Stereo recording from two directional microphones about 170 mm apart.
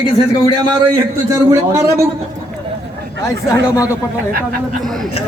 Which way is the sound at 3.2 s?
15° left (ahead or behind).